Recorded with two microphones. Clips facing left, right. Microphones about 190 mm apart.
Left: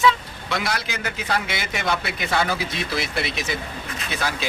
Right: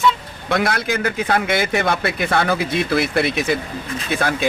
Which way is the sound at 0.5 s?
55° right (ahead or behind).